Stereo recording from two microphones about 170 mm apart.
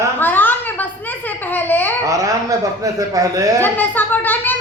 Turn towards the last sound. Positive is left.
turn(degrees=10)  # may be behind; listen again after turning